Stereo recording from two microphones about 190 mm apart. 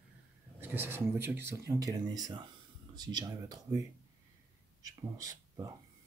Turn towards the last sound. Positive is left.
turn(degrees=-20)  # may be behind; listen again after turning